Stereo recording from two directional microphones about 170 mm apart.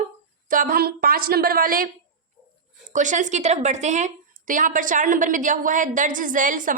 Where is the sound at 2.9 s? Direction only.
45° right (ahead or behind).